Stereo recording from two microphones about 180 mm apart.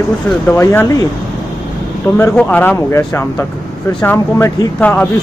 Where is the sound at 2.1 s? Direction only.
15° left (ahead or behind).